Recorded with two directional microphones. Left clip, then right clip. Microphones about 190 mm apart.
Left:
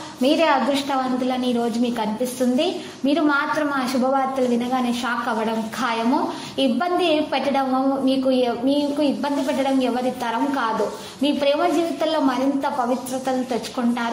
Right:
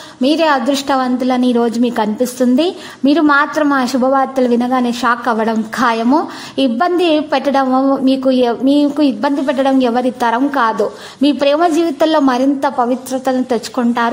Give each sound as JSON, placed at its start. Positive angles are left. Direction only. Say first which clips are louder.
{"t": 0.2, "sound": "a woman's voice", "louder": "right 5 dB", "side_deg": -35}